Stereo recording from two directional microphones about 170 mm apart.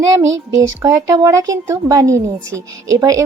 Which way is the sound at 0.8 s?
20° right (ahead or behind).